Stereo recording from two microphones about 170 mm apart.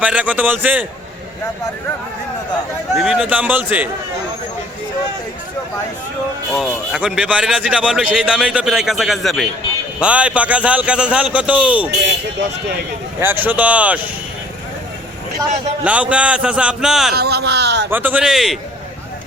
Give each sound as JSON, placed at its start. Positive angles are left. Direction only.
{"t": 0.0, "sound": "a man's voice", "side_deg": -10}
{"t": 2.9, "sound": "a man's voice", "side_deg": 0}
{"t": 6.5, "sound": "a man's voice", "side_deg": 0}
{"t": 13.1, "sound": "a man's voice", "side_deg": -10}
{"t": 15.8, "sound": "a man's voice", "side_deg": -5}
{"t": 17.2, "sound": "speech", "side_deg": -70}
{"t": 17.9, "sound": "a man's voice", "side_deg": -10}